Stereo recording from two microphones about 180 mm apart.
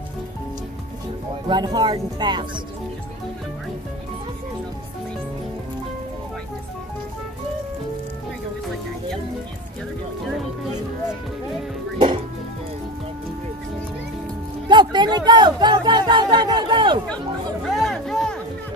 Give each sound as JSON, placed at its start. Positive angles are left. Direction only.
{"t": 1.5, "sound": "speech", "side_deg": -25}
{"t": 14.7, "sound": "speech", "side_deg": -25}
{"t": 17.6, "sound": "music", "side_deg": 0}